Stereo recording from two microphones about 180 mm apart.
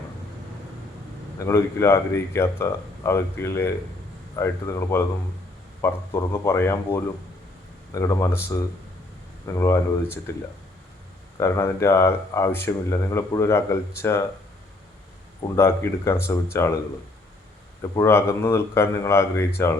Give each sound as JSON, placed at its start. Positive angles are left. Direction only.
{"t": 1.5, "sound": "speech", "side_deg": 15}
{"t": 11.3, "sound": "speech", "side_deg": 15}
{"t": 15.4, "sound": "speech", "side_deg": 15}
{"t": 17.9, "sound": "speech", "side_deg": 15}